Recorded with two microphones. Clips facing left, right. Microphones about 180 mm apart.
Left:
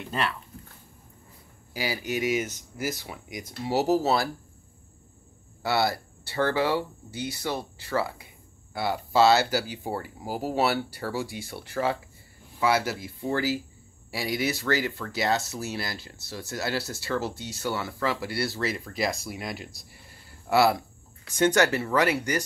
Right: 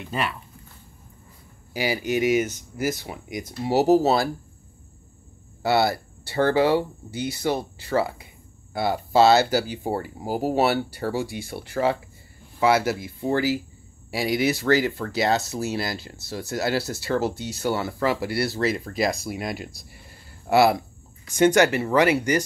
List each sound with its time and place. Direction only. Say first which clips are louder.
0.1 s speech: right 2 dB; 10° right (ahead or behind)
1.7 s speech: right 5 dB; 20° right (ahead or behind)
5.6 s speech: right 4 dB; 20° right (ahead or behind)
14.6 s speech: right 6 dB; 30° right (ahead or behind)
18.7 s speech: right 5 dB; 20° right (ahead or behind)
20.4 s speech: right 4 dB; 20° right (ahead or behind)